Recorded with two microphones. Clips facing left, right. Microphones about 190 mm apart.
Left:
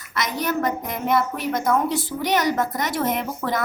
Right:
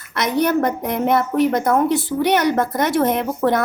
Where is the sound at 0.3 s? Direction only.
60° right (ahead or behind).